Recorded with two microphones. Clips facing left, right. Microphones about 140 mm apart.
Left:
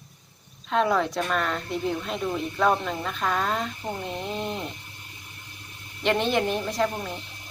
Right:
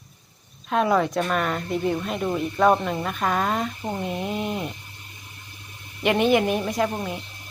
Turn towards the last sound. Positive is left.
turn(degrees=-5)  # may be behind; listen again after turning